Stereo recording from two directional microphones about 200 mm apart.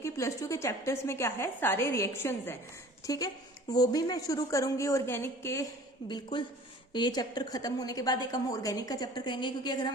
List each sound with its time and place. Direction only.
0.0 s a woman's voice: 15° left (ahead or behind)